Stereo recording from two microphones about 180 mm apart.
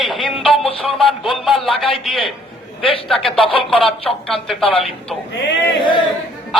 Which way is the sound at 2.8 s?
30° left (ahead or behind).